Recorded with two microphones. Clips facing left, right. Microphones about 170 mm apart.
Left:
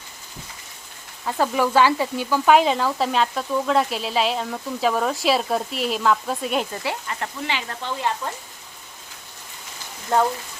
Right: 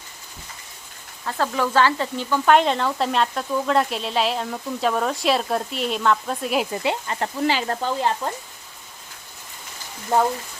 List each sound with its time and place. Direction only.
1.2 s speech: 15° left (ahead or behind)
7.1 s speech: 35° right (ahead or behind)